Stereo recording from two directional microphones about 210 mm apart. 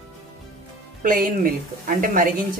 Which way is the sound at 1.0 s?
40° right (ahead or behind).